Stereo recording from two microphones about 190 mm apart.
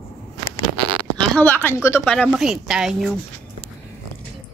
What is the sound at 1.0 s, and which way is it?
A woman's voice, 5° left (ahead or behind).